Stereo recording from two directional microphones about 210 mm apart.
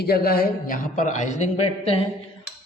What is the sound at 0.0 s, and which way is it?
A man's voice, 45° left (ahead or behind).